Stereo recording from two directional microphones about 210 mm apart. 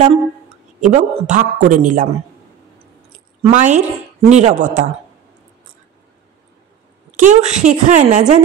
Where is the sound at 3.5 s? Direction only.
35° right (ahead or behind).